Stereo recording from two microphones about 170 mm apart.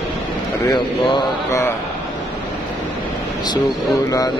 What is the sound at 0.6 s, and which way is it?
Mantra, 25° left (ahead or behind).